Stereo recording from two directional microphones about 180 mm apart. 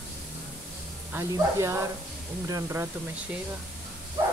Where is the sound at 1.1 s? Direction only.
15° right (ahead or behind).